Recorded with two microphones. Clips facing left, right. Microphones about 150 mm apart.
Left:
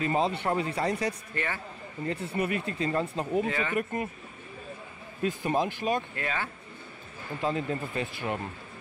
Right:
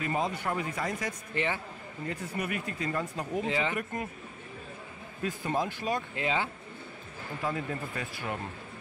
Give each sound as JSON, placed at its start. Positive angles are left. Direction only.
{"t": 0.0, "sound": "speech", "side_deg": 30}
{"t": 1.3, "sound": "speech", "side_deg": -15}
{"t": 2.0, "sound": "speech", "side_deg": 30}
{"t": 3.4, "sound": "speech", "side_deg": -15}
{"t": 3.7, "sound": "speech", "side_deg": 20}
{"t": 5.2, "sound": "speech", "side_deg": 20}
{"t": 6.1, "sound": "speech", "side_deg": -15}
{"t": 7.4, "sound": "speech", "side_deg": 25}